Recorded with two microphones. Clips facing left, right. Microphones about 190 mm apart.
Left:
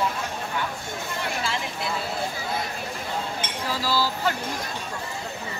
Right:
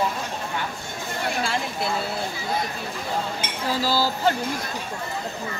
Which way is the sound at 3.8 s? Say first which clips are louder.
Right 2 dB; 25° right (ahead or behind).